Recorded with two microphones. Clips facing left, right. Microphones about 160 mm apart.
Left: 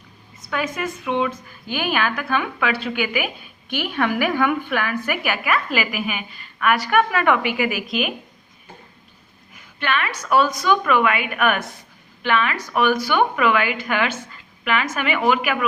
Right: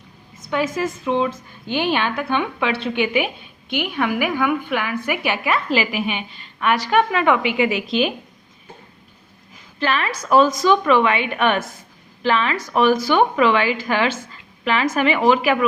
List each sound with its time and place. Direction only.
0.5 s a woman's voice: 25° right (ahead or behind)
9.8 s a woman's voice: 35° right (ahead or behind)